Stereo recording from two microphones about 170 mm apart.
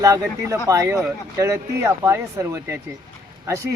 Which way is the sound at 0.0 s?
20° right (ahead or behind).